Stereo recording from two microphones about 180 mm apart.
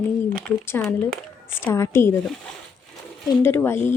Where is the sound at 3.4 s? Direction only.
15° left (ahead or behind).